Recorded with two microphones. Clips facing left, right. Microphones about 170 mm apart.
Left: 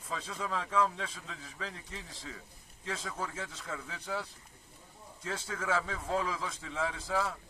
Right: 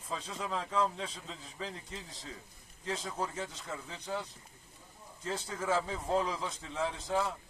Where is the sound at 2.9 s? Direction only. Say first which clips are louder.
Right 2 dB; 25° right (ahead or behind).